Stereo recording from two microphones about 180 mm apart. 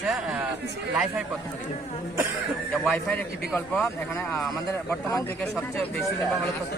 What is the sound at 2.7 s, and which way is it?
A man's voice, centre (ahead or behind).